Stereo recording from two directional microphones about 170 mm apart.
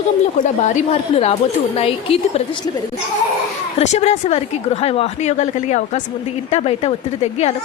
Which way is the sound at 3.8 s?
40° left (ahead or behind).